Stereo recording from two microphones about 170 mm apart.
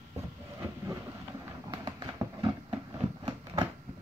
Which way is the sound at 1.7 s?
25° right (ahead or behind).